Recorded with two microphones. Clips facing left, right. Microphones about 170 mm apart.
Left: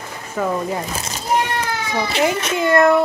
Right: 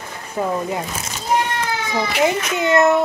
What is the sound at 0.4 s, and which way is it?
Speech, 20° right (ahead or behind).